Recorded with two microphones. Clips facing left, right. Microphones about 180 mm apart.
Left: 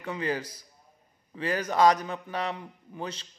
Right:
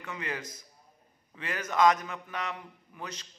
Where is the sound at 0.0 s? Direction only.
30° left (ahead or behind).